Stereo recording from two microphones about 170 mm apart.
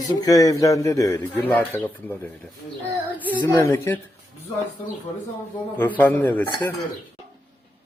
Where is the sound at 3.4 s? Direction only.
15° left (ahead or behind).